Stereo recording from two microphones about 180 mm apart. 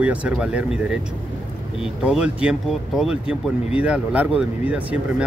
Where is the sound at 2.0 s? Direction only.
5° right (ahead or behind).